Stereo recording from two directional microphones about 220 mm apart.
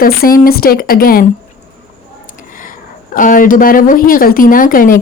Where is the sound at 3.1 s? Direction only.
35° left (ahead or behind).